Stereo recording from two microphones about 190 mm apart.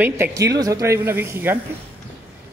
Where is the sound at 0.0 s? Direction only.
15° right (ahead or behind).